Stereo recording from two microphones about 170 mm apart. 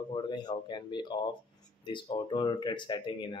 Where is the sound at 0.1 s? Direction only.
25° left (ahead or behind).